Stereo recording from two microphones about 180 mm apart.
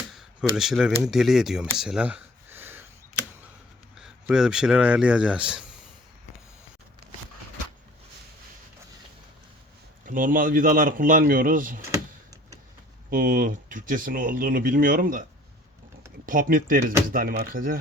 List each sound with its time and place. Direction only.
0.1 s speech: centre (ahead or behind)
3.9 s speech: 5° right (ahead or behind)
10.1 s speech: 45° right (ahead or behind)
11.9 s power windows: 20° right (ahead or behind)
13.1 s speech: 50° right (ahead or behind)
16.2 s speech: 50° right (ahead or behind)